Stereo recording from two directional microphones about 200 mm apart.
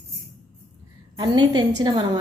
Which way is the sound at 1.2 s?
20° right (ahead or behind).